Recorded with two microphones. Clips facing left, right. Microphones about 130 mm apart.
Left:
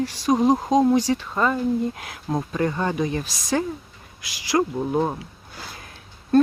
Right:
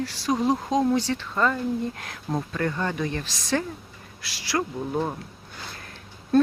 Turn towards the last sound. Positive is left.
turn(degrees=0)  # may be behind; listen again after turning